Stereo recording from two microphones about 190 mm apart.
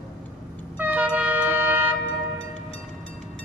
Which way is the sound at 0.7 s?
10° right (ahead or behind).